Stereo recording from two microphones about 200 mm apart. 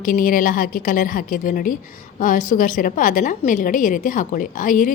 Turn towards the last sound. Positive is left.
turn(degrees=40)  # may be behind; listen again after turning